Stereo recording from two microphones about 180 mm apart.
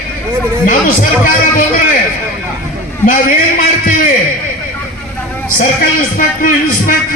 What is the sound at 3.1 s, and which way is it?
A man's voice, 50° left (ahead or behind).